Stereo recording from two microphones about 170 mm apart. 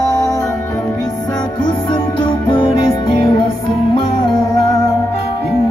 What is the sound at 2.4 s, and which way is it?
Music, 30° left (ahead or behind).